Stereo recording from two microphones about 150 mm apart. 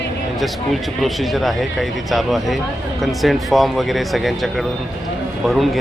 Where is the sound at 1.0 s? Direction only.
Centre (ahead or behind).